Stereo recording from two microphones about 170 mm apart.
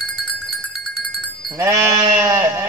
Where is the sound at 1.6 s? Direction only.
15° right (ahead or behind).